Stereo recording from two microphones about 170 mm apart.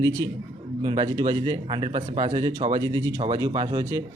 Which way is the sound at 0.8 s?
25° right (ahead or behind).